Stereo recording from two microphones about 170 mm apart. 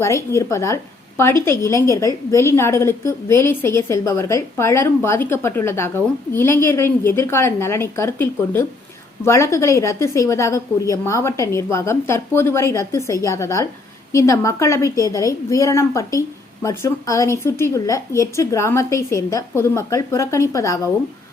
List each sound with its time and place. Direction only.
0.0 s a woman's voice: 15° left (ahead or behind)